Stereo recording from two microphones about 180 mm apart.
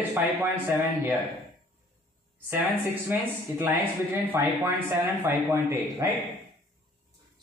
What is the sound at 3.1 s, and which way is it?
Speech, 10° right (ahead or behind).